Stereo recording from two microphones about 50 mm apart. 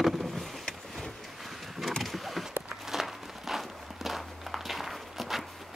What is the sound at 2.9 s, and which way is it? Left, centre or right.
Walk, centre.